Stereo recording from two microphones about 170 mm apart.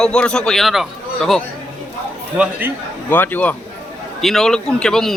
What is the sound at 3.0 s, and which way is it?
A man's voice, 10° left (ahead or behind).